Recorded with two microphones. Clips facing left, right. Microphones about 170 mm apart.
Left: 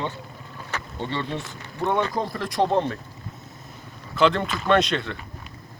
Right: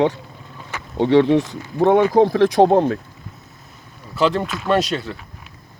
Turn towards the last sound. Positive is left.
turn(degrees=-5)  # may be behind; listen again after turning